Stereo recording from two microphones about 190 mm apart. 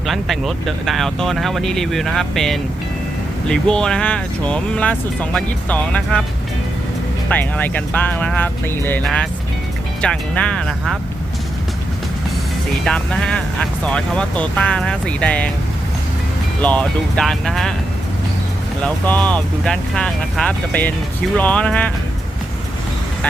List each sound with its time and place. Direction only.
0.1 s speech: centre (ahead or behind)
7.3 s speech: 10° left (ahead or behind)
12.8 s speech: 5° left (ahead or behind)
16.6 s speech: 5° left (ahead or behind)
18.8 s speech: 5° left (ahead or behind)